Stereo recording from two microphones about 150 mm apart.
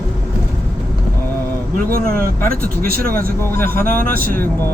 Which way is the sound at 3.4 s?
15° left (ahead or behind).